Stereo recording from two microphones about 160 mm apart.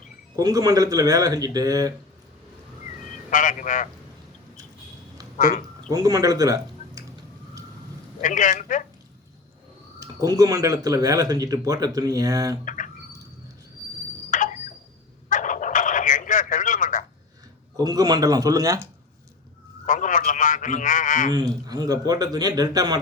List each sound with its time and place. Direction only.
0.3 s speech: 20° right (ahead or behind)
3.2 s a man's voice: 55° left (ahead or behind)
5.4 s speech: 55° left (ahead or behind)
5.9 s speech: 25° right (ahead or behind)
8.2 s a man's voice: 55° left (ahead or behind)
10.0 s speech: 20° right (ahead or behind)
12.6 s speech: 55° left (ahead or behind)
14.3 s a sound: 55° left (ahead or behind)
17.7 s speech: 25° right (ahead or behind)
19.8 s a man's voice: 55° left (ahead or behind)
21.3 s speech: 25° right (ahead or behind)